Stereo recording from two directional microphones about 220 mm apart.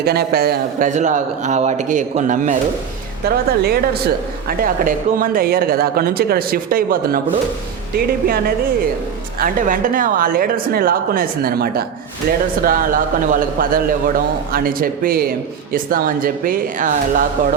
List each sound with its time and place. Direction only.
0.0 s a man's voice: 45° right (ahead or behind)